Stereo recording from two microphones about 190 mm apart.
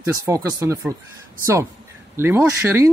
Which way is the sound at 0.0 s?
15° right (ahead or behind).